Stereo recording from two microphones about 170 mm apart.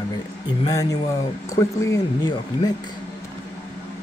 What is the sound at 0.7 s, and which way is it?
Speech, 20° left (ahead or behind).